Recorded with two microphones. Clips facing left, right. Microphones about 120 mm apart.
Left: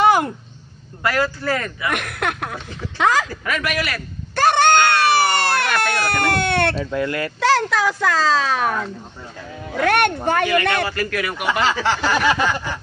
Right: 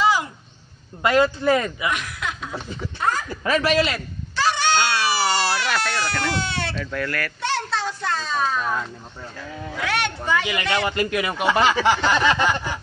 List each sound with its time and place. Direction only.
0.0 s a sound: 55° left (ahead or behind)
1.0 s speech: 20° right (ahead or behind)
1.9 s speech: 60° left (ahead or behind); by 3.3 s 90° left
3.4 s speech: 30° right (ahead or behind)
4.4 s a sound: 55° left (ahead or behind)
5.9 s speech: 55° left (ahead or behind)
6.8 s speech: 20° left (ahead or behind)
7.3 s speech: 90° left; by 8.8 s 70° left (ahead or behind)
9.8 s speech: 55° left (ahead or behind)
10.9 s speech: 20° right (ahead or behind)